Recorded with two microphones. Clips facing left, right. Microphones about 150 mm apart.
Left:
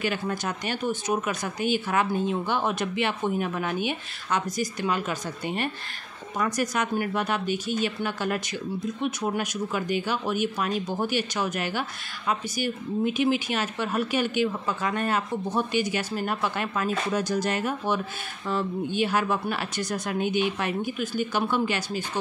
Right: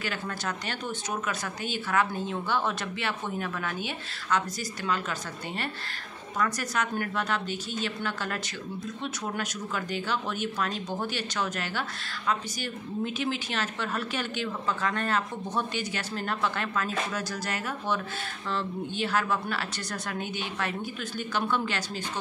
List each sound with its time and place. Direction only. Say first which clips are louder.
0.0 s speech: left 5 dB; 15° left (ahead or behind)